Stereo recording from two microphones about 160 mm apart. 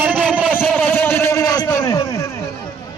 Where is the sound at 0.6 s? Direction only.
5° left (ahead or behind); by 2.0 s 20° left (ahead or behind).